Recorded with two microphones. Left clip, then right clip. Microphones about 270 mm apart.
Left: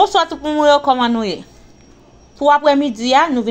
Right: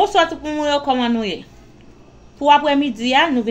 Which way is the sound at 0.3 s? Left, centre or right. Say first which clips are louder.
Left 7 dB; centre.